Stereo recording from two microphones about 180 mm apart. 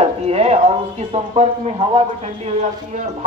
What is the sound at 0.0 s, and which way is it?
Speech, 35° right (ahead or behind).